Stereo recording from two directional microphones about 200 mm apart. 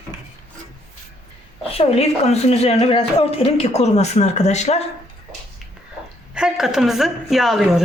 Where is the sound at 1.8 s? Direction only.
30° left (ahead or behind).